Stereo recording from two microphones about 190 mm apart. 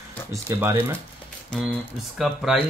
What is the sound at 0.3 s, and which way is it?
Speech, 15° right (ahead or behind).